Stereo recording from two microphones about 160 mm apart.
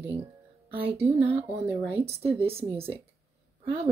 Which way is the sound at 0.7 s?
40° right (ahead or behind).